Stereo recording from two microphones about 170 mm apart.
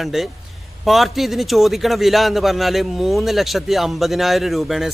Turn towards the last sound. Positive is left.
turn(degrees=0)  # may be behind; listen again after turning